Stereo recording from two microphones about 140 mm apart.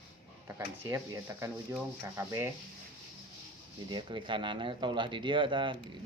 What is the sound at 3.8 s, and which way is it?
Speech, 35° right (ahead or behind).